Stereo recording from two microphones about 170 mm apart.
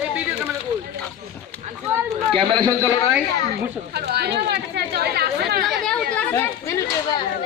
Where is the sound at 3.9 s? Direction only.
70° right (ahead or behind).